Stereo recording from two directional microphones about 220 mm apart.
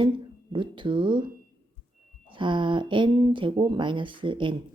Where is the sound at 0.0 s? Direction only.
20° right (ahead or behind).